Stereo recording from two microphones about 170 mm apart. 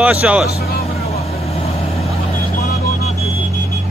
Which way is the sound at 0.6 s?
65° left (ahead or behind).